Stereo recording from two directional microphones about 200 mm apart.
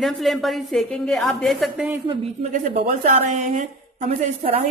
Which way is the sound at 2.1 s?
30° right (ahead or behind).